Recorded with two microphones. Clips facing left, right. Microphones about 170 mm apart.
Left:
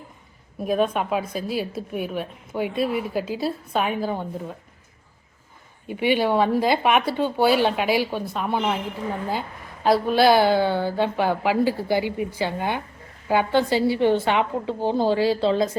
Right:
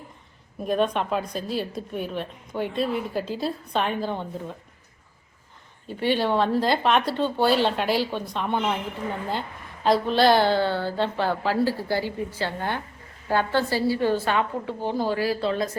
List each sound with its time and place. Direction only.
0.6 s a woman's voice: 5° left (ahead or behind)
5.9 s a woman's voice: 15° left (ahead or behind)
9.8 s a woman's voice: 10° left (ahead or behind)
14.8 s a woman's voice: 30° left (ahead or behind)